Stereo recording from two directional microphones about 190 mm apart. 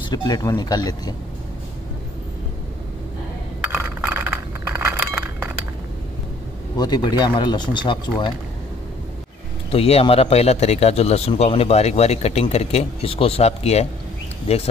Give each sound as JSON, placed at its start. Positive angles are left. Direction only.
{"t": 0.1, "sound": "speech", "side_deg": 20}
{"t": 3.7, "sound": "chink", "side_deg": -5}
{"t": 6.8, "sound": "speech", "side_deg": 20}
{"t": 9.7, "sound": "speech", "side_deg": 30}